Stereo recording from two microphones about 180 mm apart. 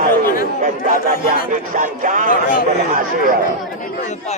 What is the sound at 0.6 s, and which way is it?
Chatter, 50° right (ahead or behind).